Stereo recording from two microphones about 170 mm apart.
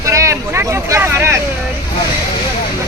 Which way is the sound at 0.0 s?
20° right (ahead or behind).